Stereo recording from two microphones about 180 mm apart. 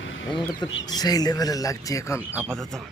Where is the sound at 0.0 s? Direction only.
90° left.